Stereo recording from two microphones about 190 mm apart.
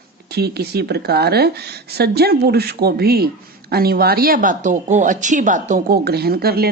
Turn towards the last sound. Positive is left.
turn(degrees=-55)  # may be behind; listen again after turning